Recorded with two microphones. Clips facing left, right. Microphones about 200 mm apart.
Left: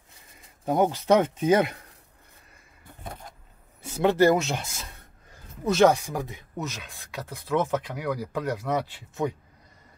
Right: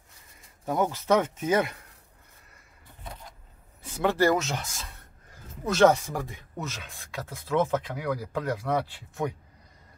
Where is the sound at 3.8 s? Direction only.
25° left (ahead or behind).